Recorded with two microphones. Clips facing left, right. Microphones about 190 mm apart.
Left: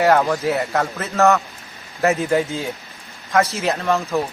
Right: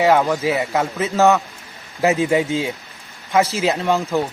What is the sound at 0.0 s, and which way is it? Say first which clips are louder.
Speech: even; centre (ahead or behind).